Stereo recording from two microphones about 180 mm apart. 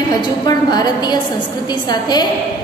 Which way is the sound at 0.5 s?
20° left (ahead or behind).